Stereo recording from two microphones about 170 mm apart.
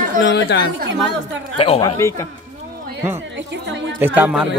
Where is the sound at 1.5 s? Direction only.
30° left (ahead or behind).